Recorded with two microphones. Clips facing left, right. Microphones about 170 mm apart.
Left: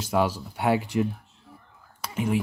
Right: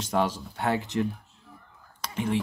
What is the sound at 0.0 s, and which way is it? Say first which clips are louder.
Speech: left 2 dB; 10° left (ahead or behind).